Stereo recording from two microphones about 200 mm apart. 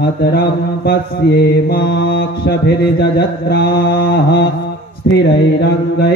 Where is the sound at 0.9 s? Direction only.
50° left (ahead or behind).